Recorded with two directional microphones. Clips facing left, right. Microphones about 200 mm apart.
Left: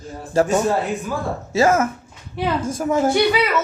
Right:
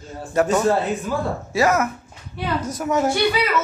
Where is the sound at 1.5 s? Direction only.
25° left (ahead or behind).